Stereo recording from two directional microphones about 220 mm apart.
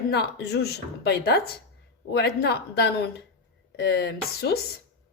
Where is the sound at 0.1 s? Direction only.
50° left (ahead or behind).